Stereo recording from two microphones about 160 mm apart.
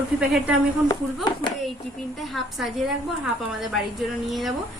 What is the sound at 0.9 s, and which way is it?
Speech, 30° left (ahead or behind).